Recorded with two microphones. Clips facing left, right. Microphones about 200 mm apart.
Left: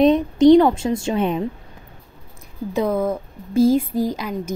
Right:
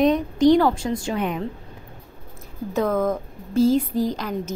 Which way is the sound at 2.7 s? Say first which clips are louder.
Left 1 dB; 10° left (ahead or behind).